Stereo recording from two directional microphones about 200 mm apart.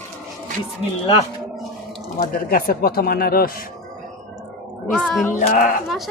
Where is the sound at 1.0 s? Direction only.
30° left (ahead or behind).